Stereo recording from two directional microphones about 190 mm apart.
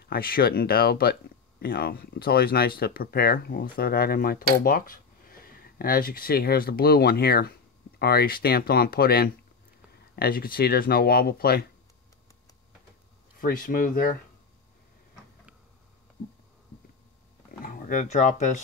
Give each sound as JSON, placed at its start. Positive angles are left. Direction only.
{"t": 0.0, "sound": "speech", "side_deg": 50}
{"t": 13.4, "sound": "speech", "side_deg": 45}
{"t": 17.6, "sound": "speech", "side_deg": 45}